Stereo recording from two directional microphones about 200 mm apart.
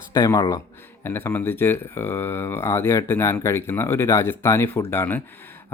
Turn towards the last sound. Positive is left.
turn(degrees=10)  # may be behind; listen again after turning